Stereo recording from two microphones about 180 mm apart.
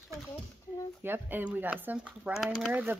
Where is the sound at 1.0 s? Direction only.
10° right (ahead or behind).